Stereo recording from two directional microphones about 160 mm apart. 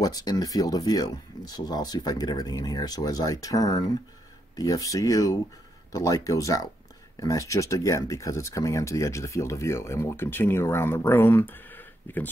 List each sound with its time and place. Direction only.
0.0 s speech: 25° left (ahead or behind)